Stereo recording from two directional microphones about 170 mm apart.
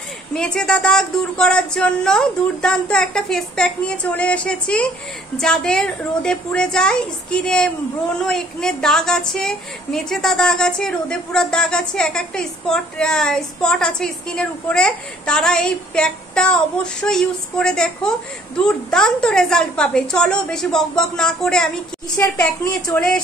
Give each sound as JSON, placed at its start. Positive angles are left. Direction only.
{"t": 0.3, "sound": "a woman's voice", "side_deg": 5}
{"t": 22.1, "sound": "a woman's voice", "side_deg": 15}
{"t": 22.9, "sound": "a woman's voice", "side_deg": 5}